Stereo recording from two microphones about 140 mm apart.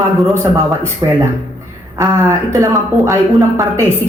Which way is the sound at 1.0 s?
25° right (ahead or behind).